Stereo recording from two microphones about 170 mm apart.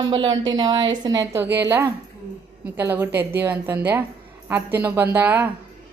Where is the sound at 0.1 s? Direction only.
25° right (ahead or behind).